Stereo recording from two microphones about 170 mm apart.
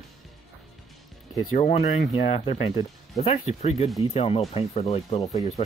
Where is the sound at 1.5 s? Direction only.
45° left (ahead or behind).